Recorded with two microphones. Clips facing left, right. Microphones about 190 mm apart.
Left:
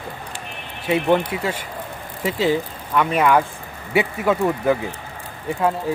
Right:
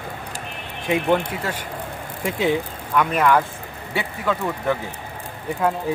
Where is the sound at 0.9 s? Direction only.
10° left (ahead or behind).